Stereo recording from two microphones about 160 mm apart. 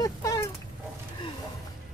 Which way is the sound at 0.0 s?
20° left (ahead or behind).